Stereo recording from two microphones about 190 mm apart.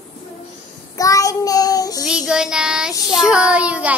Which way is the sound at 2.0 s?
5° right (ahead or behind).